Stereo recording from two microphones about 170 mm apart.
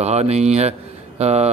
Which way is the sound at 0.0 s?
40° right (ahead or behind).